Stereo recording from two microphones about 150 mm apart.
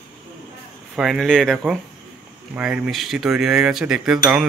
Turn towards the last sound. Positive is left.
turn(degrees=-5)  # may be behind; listen again after turning